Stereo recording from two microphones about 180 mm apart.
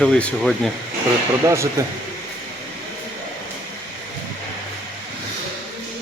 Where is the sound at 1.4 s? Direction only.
15° right (ahead or behind).